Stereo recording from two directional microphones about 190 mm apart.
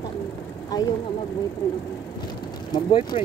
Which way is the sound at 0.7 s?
20° left (ahead or behind).